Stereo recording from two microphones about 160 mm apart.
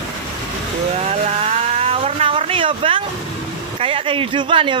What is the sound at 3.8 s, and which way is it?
Speech, 35° right (ahead or behind).